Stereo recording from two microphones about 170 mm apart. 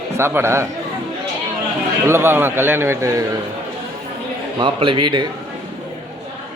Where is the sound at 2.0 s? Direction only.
15° right (ahead or behind).